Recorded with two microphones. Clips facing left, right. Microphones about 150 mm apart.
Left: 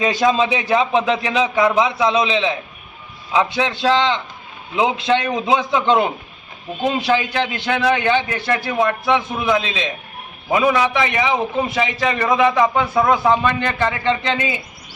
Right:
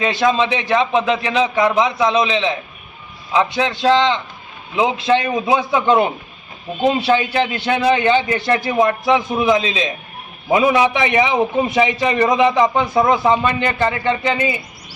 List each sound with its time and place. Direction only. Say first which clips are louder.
0.0 s a man's voice: even; 10° left (ahead or behind)